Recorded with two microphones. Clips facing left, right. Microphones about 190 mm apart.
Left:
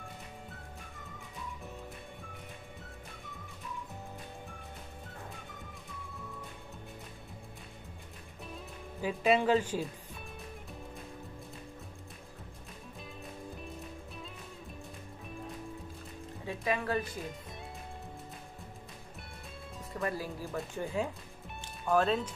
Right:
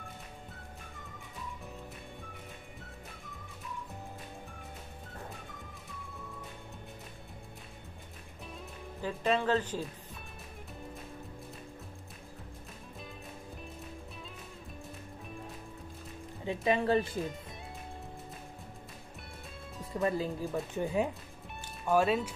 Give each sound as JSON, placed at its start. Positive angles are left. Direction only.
{"t": 9.0, "sound": "speech", "side_deg": 10}
{"t": 16.4, "sound": "speech", "side_deg": -25}
{"t": 19.9, "sound": "speech", "side_deg": -20}
{"t": 21.8, "sound": "speech", "side_deg": -5}